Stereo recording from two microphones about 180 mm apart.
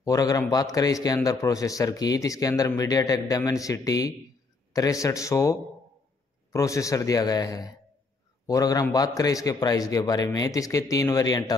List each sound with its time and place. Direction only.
0.0 s a man's voice: 20° left (ahead or behind)